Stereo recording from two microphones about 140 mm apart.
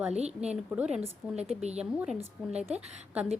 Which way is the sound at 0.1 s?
50° right (ahead or behind).